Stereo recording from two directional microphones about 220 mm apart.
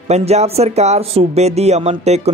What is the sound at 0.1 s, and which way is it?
Speech, 30° right (ahead or behind).